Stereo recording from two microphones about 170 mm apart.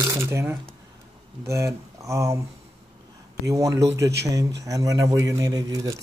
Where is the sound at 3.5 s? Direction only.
20° right (ahead or behind).